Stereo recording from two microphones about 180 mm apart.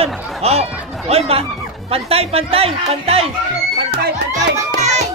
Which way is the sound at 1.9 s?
35° right (ahead or behind).